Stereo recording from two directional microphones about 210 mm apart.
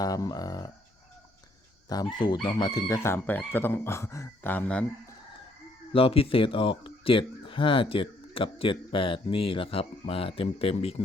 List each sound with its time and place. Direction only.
0.0 s speech: 15° left (ahead or behind)
1.9 s speech: 20° left (ahead or behind)
5.9 s speech: 25° left (ahead or behind)